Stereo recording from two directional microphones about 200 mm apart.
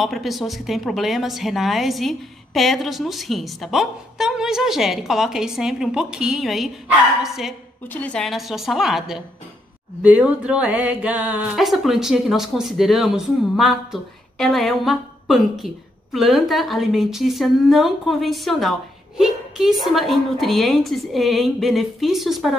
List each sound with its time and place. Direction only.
0.0 s speech: centre (ahead or behind)